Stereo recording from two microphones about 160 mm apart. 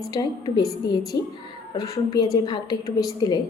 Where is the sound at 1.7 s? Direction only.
20° left (ahead or behind).